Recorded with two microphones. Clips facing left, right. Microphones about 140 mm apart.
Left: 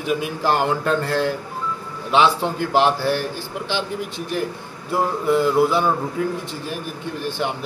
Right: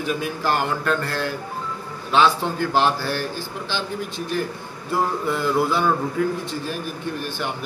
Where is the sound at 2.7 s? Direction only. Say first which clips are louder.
Left 4 dB; 20° left (ahead or behind).